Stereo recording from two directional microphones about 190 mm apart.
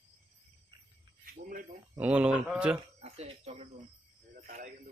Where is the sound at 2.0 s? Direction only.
5° right (ahead or behind).